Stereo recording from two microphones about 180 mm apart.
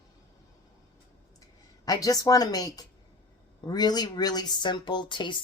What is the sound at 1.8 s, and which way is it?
Speech, 20° left (ahead or behind).